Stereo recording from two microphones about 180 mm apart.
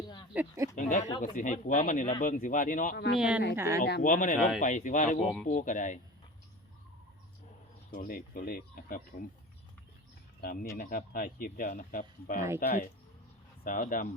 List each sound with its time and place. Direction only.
0.3 s speech: 15° right (ahead or behind)
0.8 s speech: 45° left (ahead or behind)
3.2 s speech: 5° right (ahead or behind)
3.8 s speech: 65° left (ahead or behind)
4.0 s speech: 45° left (ahead or behind)
5.2 s speech: centre (ahead or behind)
5.5 s speech: 45° left (ahead or behind)
7.9 s speech: 50° left (ahead or behind)
10.4 s speech: 50° left (ahead or behind)
13.7 s speech: 50° left (ahead or behind)